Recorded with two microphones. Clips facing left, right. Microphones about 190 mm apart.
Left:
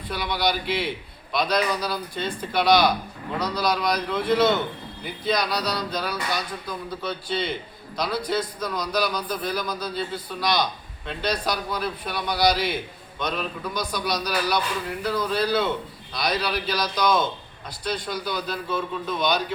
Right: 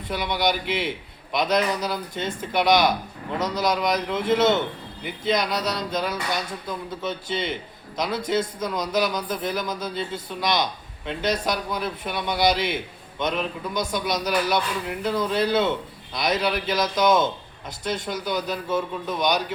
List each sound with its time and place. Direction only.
0.1 s a man's voice: 20° right (ahead or behind)